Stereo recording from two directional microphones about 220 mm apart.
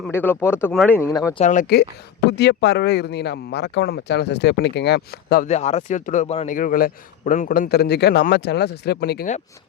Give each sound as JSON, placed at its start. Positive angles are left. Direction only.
{"t": 0.0, "sound": "speech", "side_deg": 10}
{"t": 1.4, "sound": "a man's voice", "side_deg": 35}
{"t": 5.5, "sound": "a man's voice", "side_deg": 30}